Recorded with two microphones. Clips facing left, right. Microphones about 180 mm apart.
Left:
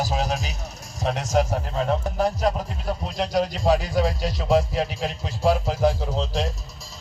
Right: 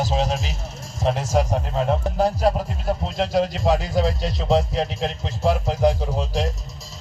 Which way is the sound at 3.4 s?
Centre (ahead or behind).